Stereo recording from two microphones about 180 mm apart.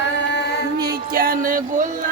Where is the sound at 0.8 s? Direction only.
55° right (ahead or behind).